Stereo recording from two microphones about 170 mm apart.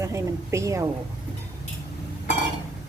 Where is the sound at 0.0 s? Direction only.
15° right (ahead or behind).